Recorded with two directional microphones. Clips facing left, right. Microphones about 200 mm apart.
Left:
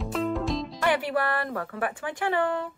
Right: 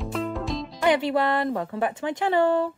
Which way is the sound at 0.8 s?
20° right (ahead or behind).